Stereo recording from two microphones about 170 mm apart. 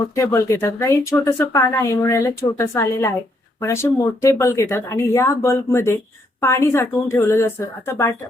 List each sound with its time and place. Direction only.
0.2 s speech: 15° left (ahead or behind)